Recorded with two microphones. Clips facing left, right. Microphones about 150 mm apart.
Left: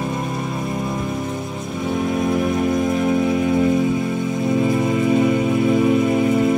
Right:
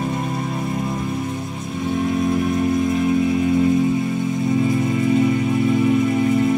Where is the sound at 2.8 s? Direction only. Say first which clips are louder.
Even; 60° left (ahead or behind); by 6.6 s 75° left (ahead or behind).